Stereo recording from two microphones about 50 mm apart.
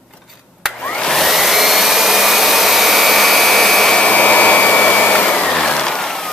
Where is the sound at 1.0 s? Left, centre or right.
Centre.